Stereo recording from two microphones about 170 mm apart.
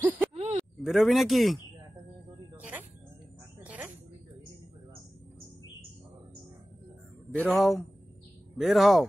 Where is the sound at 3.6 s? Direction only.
10° right (ahead or behind).